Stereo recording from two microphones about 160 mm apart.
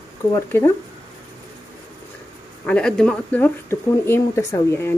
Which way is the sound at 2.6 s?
5° left (ahead or behind).